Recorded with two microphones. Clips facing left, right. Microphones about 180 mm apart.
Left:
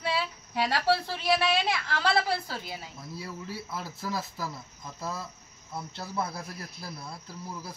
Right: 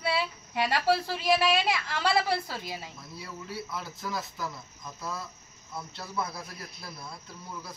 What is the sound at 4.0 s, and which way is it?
Speech, 30° left (ahead or behind).